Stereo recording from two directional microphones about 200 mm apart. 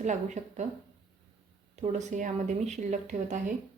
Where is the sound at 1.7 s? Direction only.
35° right (ahead or behind).